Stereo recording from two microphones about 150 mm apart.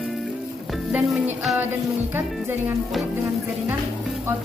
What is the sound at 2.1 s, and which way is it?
Speech, 15° right (ahead or behind).